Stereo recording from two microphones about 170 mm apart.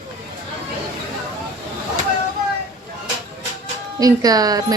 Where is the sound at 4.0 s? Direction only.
20° right (ahead or behind).